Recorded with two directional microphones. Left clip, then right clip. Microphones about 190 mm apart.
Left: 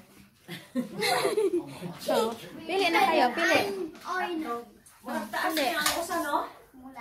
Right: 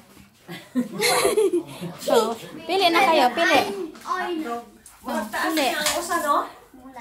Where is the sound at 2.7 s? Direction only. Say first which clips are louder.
Right 6 dB; 20° right (ahead or behind).